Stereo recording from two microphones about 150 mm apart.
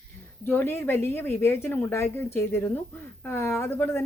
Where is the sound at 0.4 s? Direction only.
15° left (ahead or behind).